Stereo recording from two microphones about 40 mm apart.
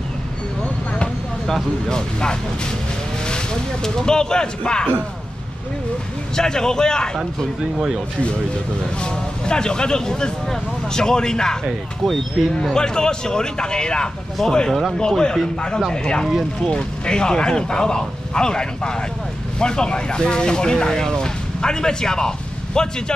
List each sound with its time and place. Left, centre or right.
1.9 s speech: centre
3.8 s speech: centre
6.3 s speech: centre
9.0 s speech: left
12.5 s speech: centre